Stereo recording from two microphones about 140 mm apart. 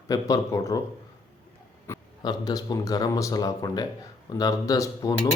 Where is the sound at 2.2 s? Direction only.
30° left (ahead or behind).